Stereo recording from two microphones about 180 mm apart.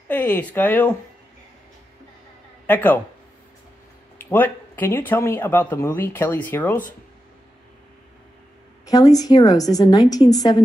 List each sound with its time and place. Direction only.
0.1 s speech: 10° left (ahead or behind)
2.6 s a man's voice: 10° left (ahead or behind)
4.2 s speech: 10° left (ahead or behind)
8.8 s a woman's voice: 20° left (ahead or behind)